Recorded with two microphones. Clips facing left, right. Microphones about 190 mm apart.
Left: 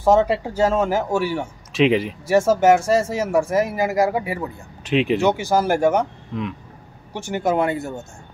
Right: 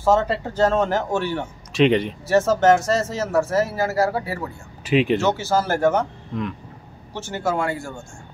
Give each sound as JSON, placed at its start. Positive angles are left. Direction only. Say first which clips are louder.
{"t": 0.0, "sound": "speech", "louder": "left 3 dB", "side_deg": 15}
{"t": 4.8, "sound": "speech", "louder": "right 1 dB", "side_deg": 0}
{"t": 5.2, "sound": "speech", "louder": "left 2 dB", "side_deg": 15}
{"t": 6.3, "sound": "speech", "louder": "even", "side_deg": 0}
{"t": 7.2, "sound": "speech", "louder": "left 4 dB", "side_deg": 15}